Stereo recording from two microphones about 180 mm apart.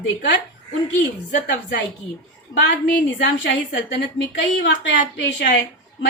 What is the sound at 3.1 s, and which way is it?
A woman's voice, 85° left.